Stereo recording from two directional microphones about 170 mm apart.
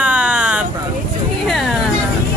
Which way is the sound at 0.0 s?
5° right (ahead or behind).